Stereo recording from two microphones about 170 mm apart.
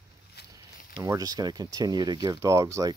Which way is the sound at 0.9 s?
20° right (ahead or behind).